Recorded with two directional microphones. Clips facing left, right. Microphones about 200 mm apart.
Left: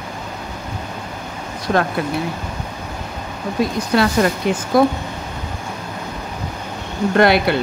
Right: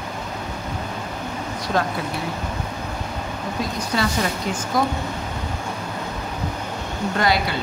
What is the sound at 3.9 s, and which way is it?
Speech, 60° left (ahead or behind).